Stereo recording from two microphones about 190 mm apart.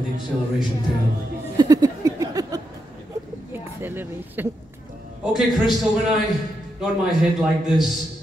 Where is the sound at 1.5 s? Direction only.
20° right (ahead or behind).